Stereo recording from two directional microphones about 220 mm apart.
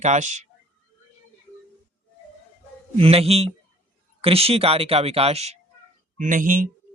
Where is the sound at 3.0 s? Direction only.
25° right (ahead or behind).